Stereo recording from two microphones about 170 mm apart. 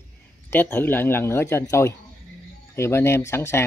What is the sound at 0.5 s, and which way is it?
Speech, 10° left (ahead or behind).